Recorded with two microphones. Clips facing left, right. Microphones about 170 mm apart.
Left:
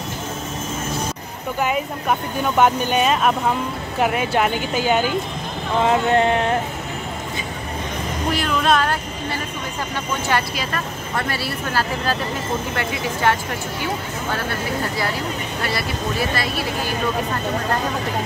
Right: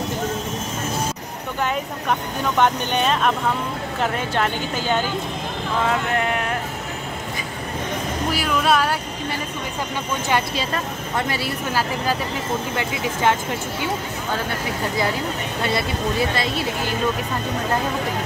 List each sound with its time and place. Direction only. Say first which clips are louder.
1.6 s speech: left 2 dB; 10° left (ahead or behind)
5.9 s speech: left 7 dB; 30° left (ahead or behind)
8.3 s speech: left 1 dB; 5° right (ahead or behind)
10.3 s speech: right 1 dB; 20° right (ahead or behind)
15.6 s speech: right 3 dB; 20° right (ahead or behind)